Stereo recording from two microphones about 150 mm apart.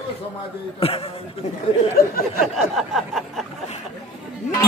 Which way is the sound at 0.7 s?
40° left (ahead or behind).